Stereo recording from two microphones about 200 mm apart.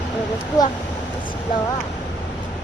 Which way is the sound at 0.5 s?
15° left (ahead or behind).